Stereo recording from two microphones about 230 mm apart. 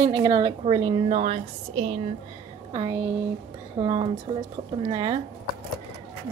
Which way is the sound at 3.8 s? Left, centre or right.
Right.